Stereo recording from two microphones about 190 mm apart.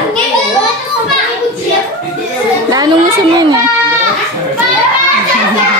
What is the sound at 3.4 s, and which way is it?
Speech, 20° right (ahead or behind).